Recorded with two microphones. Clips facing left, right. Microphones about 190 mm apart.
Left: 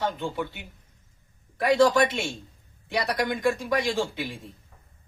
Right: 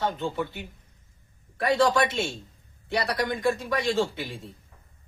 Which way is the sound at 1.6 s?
15° left (ahead or behind).